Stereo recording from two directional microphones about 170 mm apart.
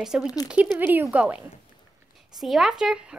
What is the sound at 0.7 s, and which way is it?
A woman's voice, 10° right (ahead or behind).